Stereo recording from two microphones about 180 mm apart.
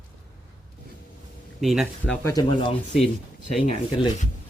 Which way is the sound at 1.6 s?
Centre (ahead or behind).